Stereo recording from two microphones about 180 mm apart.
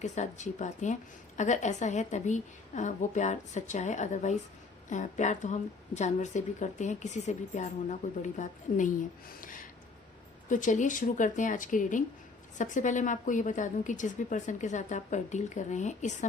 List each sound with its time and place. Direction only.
0.0 s a woman's voice: 40° left (ahead or behind)
10.5 s a woman's voice: 45° left (ahead or behind)